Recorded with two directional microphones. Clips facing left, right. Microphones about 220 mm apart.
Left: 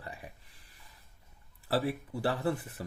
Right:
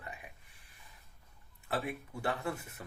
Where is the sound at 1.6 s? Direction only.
35° left (ahead or behind).